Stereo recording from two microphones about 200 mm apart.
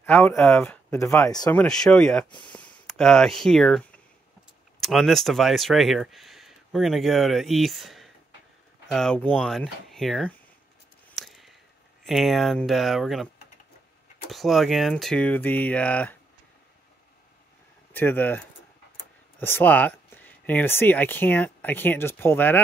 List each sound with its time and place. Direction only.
0.0 s speech: 10° left (ahead or behind)
11.1 s a sound: centre (ahead or behind)
12.1 s speech: centre (ahead or behind)
14.3 s speech: centre (ahead or behind)
17.9 s speech: 10° left (ahead or behind)
19.4 s speech: 10° left (ahead or behind)